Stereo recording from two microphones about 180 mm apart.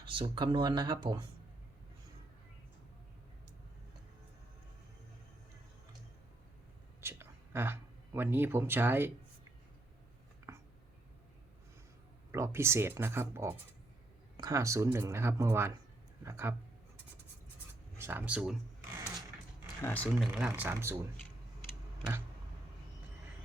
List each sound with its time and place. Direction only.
0.0 s speech: 30° right (ahead or behind)
7.0 s speech: 15° right (ahead or behind)
10.5 s a sound: 15° right (ahead or behind)
12.3 s speech: 15° right (ahead or behind)
17.9 s speech: 10° right (ahead or behind)
19.8 s speech: 10° left (ahead or behind)
20.1 s speech: centre (ahead or behind)
20.5 s speech: 15° right (ahead or behind)
21.2 s a sound: 15° left (ahead or behind)